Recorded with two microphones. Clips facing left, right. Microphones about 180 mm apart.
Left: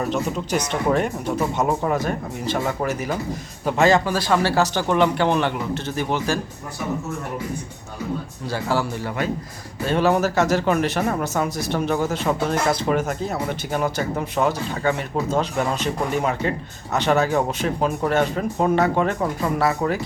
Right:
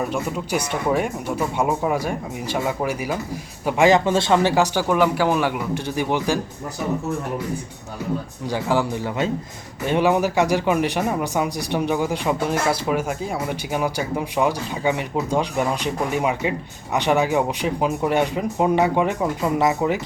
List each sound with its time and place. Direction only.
0.0 s speech: 10° right (ahead or behind)
8.4 s speech: 15° right (ahead or behind)